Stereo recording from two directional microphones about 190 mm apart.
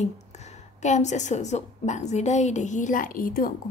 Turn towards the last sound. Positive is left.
turn(degrees=50)  # may be behind; listen again after turning